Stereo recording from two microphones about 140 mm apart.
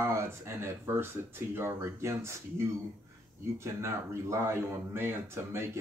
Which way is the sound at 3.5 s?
20° right (ahead or behind).